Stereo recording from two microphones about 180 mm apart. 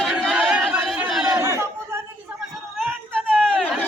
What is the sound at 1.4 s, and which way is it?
Chatter, 15° right (ahead or behind).